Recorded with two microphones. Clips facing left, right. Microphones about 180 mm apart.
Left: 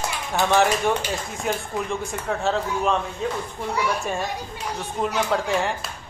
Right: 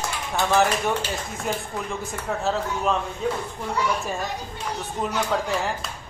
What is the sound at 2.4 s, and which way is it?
Speech, centre (ahead or behind).